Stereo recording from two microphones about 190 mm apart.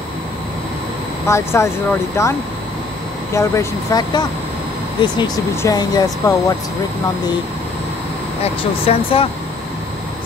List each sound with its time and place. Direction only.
1.2 s speech: 15° left (ahead or behind)
3.3 s speech: 20° left (ahead or behind)
8.8 s speech: 30° left (ahead or behind)